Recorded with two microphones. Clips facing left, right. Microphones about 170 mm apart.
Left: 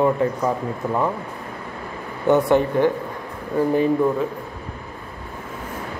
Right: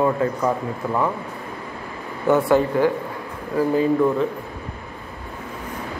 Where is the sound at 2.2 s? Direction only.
20° left (ahead or behind).